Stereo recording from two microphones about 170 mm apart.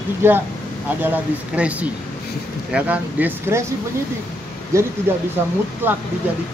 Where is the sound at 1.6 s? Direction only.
10° right (ahead or behind).